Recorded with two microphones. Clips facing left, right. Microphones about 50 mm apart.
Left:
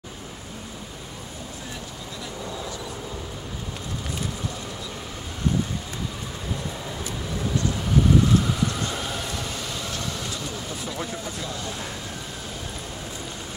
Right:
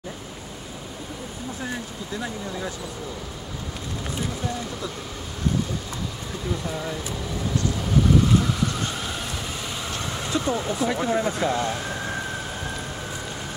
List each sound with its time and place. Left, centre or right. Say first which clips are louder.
9.9 s vehicle: right 1 dB; right
10.3 s speech: right 8 dB; right